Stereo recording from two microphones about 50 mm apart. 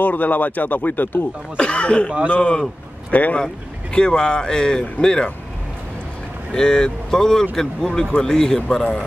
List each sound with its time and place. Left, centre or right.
0.0 s speech: left
1.6 s speech: left
3.1 s speech: left
3.9 s speech: centre
6.5 s speech: centre